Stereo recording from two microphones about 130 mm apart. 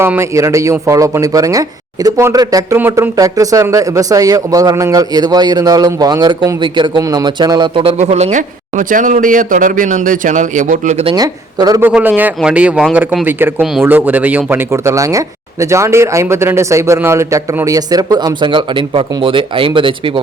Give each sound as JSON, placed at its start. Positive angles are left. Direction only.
{"t": 0.0, "sound": "speech", "side_deg": -20}
{"t": 2.7, "sound": "speech", "side_deg": -15}
{"t": 7.9, "sound": "a man's voice", "side_deg": -60}
{"t": 11.1, "sound": "speech", "side_deg": -30}
{"t": 11.8, "sound": "speech", "side_deg": -10}